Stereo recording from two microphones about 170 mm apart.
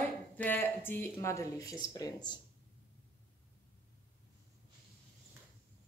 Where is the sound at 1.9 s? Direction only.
20° left (ahead or behind).